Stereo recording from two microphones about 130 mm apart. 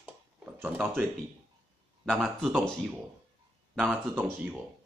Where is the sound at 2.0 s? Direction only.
Centre (ahead or behind).